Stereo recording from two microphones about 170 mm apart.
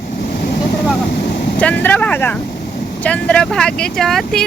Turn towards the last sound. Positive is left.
turn(degrees=0)  # may be behind; listen again after turning